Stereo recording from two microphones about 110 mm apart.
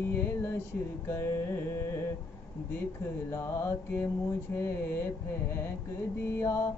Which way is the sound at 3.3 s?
25° left (ahead or behind).